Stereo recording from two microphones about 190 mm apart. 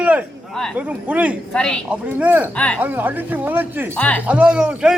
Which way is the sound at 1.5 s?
5° left (ahead or behind).